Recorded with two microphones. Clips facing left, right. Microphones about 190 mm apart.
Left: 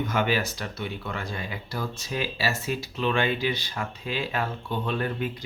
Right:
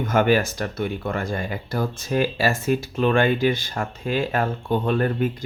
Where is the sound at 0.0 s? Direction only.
50° right (ahead or behind).